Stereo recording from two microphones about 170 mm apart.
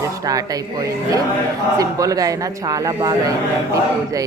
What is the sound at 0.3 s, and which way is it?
A man's voice, 20° right (ahead or behind).